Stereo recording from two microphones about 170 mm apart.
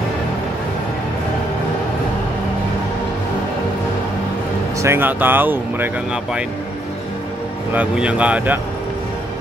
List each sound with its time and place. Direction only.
4.8 s speech: 10° right (ahead or behind)
7.7 s speech: 5° right (ahead or behind)